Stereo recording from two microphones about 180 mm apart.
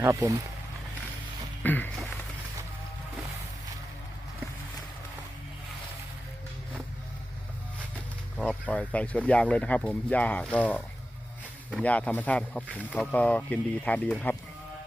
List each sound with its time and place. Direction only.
0.0 s speech: 15° right (ahead or behind)
1.6 s speech: 10° left (ahead or behind)
8.4 s speech: 5° left (ahead or behind)
12.6 s speech: 5° right (ahead or behind)
13.0 s speech: 5° left (ahead or behind)